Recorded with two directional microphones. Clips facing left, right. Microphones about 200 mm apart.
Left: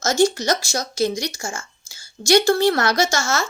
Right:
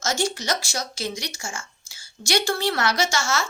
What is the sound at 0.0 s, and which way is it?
A woman's voice, 40° left (ahead or behind).